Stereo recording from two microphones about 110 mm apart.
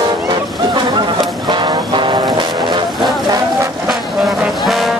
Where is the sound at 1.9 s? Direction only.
45° right (ahead or behind).